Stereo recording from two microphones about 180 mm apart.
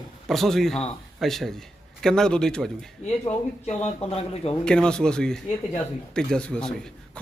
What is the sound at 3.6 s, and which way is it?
Speech, 35° left (ahead or behind).